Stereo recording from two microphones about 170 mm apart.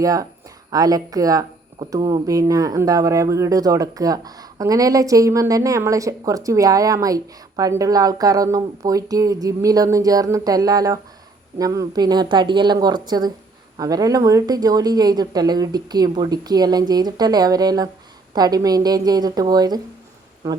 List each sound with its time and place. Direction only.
0.0 s speech: 20° right (ahead or behind)